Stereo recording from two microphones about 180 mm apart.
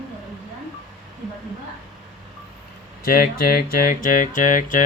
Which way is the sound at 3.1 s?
55° left (ahead or behind).